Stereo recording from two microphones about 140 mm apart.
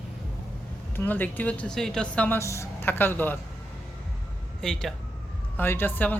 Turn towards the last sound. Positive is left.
turn(degrees=15)  # may be behind; listen again after turning